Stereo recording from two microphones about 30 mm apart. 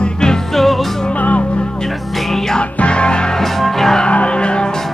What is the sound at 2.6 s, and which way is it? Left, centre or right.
Music, left.